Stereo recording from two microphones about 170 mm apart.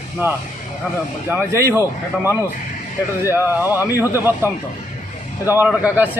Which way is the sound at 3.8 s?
15° right (ahead or behind).